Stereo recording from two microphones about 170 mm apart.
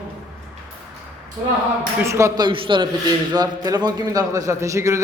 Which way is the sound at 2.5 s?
30° right (ahead or behind).